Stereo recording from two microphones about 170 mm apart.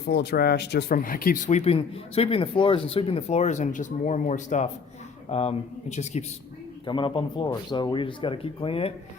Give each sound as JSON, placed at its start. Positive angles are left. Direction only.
{"t": 0.0, "sound": "speech", "side_deg": 75}
{"t": 6.8, "sound": "speech", "side_deg": 30}